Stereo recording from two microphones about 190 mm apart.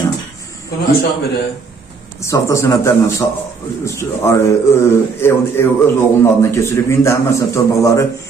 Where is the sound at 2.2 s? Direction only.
15° left (ahead or behind).